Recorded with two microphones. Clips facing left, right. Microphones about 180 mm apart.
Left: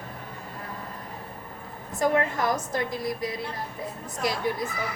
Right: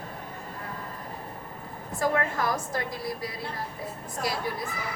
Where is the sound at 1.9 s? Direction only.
20° left (ahead or behind).